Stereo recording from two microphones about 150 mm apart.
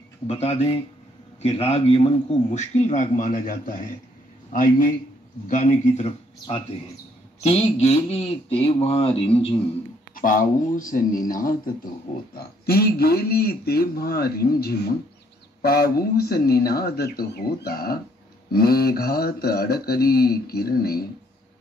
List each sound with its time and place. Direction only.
0.3 s a man's voice: 45° left (ahead or behind)
6.4 s speech: 40° left (ahead or behind)
10.1 s speech: 65° left (ahead or behind)
12.4 s speech: 90° left